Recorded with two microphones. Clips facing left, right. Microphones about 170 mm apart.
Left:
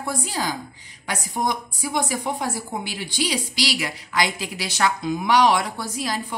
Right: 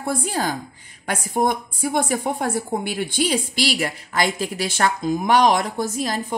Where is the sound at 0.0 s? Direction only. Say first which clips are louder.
Right 3 dB; 55° right (ahead or behind).